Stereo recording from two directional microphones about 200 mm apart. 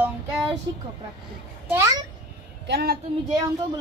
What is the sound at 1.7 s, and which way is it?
Speech, 15° right (ahead or behind).